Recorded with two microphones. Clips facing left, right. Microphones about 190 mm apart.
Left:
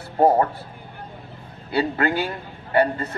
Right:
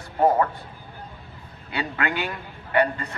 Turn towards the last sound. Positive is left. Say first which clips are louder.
# left 2 dB
turn(degrees=35)  # may be behind; listen again after turning